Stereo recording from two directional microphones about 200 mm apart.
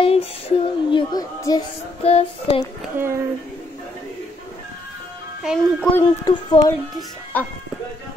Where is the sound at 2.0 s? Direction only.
30° left (ahead or behind).